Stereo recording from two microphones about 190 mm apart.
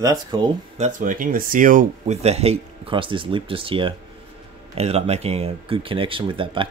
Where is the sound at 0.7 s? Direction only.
40° right (ahead or behind).